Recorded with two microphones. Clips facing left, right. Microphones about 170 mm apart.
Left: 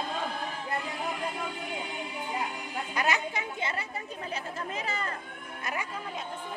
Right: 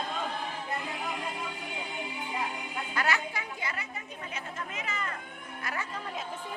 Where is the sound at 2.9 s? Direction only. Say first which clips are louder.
Left 2 dB; 20° left (ahead or behind); by 5.1 s 35° left (ahead or behind).